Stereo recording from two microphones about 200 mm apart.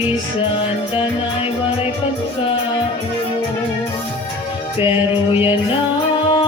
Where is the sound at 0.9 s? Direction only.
30° left (ahead or behind).